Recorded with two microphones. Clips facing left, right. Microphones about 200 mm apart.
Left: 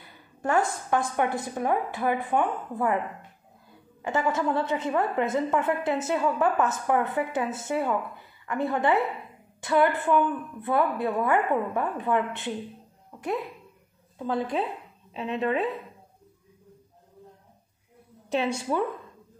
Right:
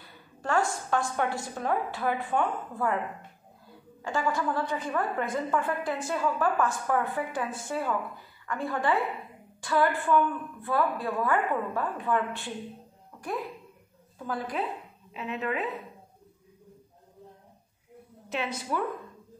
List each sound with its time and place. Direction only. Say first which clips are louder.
0.4 s a woman's voice: left 2 dB; 20° left (ahead or behind)
4.0 s a woman's voice: left 3 dB; 20° left (ahead or behind)
14.1 s a woman's voice: left 5 dB; 25° left (ahead or behind)
18.3 s a woman's voice: left 5 dB; 30° left (ahead or behind)